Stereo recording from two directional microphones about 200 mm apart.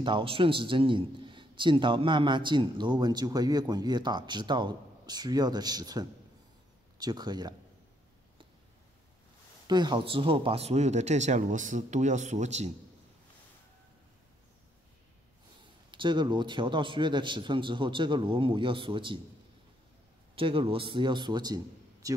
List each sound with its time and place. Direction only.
0.0 s a man's voice: 25° right (ahead or behind)
9.7 s speech: 20° right (ahead or behind)
15.9 s a man's voice: 25° right (ahead or behind)
20.3 s a man's voice: 25° right (ahead or behind)